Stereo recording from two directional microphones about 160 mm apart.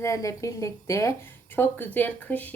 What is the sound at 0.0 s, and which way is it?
A woman's voice, 20° left (ahead or behind).